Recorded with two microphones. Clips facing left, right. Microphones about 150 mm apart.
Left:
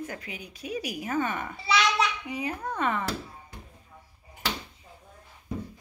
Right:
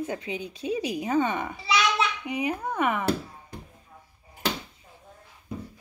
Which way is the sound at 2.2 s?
15° right (ahead or behind).